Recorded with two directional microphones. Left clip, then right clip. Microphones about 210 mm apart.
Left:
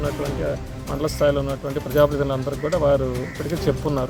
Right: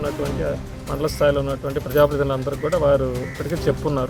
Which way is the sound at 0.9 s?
5° right (ahead or behind).